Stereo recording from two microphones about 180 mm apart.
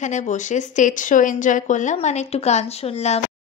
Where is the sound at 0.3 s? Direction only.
45° left (ahead or behind).